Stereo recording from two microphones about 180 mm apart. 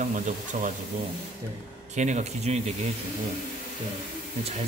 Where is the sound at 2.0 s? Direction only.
40° right (ahead or behind).